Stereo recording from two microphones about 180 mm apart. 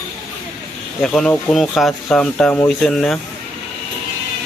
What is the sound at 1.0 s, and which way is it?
Speech, 5° left (ahead or behind).